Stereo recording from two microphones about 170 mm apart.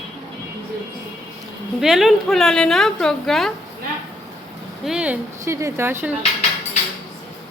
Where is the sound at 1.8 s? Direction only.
Centre (ahead or behind).